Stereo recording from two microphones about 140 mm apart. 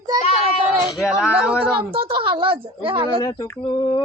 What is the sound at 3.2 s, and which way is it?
Speech, 30° left (ahead or behind).